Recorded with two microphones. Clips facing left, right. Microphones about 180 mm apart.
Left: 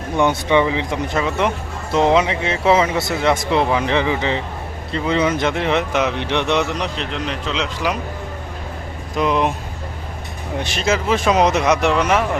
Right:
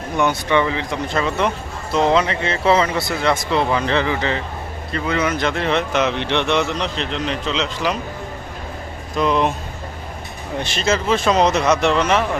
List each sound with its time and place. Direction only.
0.2 s speech: 20° left (ahead or behind)
9.1 s speech: 15° left (ahead or behind)
10.6 s speech: 10° left (ahead or behind)